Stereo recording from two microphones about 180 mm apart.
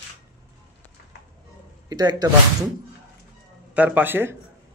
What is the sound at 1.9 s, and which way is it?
Speech, 20° right (ahead or behind).